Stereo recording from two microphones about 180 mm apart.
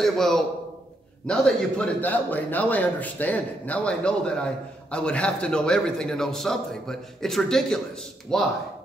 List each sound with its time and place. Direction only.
0.0 s a man's voice: centre (ahead or behind)